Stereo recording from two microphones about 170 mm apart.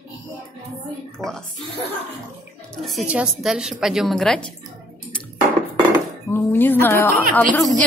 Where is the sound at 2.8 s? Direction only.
Centre (ahead or behind).